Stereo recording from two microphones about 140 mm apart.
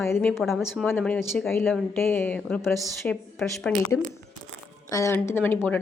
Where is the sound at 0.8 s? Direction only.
10° left (ahead or behind).